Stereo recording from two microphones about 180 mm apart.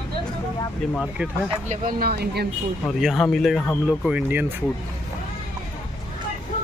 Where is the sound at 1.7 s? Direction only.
55° right (ahead or behind).